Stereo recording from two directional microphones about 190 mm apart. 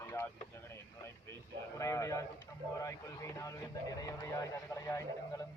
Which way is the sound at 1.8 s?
15° left (ahead or behind).